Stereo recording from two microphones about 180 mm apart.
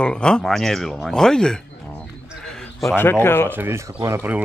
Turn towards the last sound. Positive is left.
turn(degrees=-15)  # may be behind; listen again after turning